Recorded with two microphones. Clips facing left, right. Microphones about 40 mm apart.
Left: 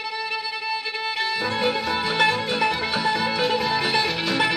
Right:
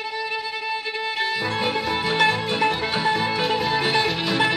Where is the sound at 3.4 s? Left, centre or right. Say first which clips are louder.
Even; centre.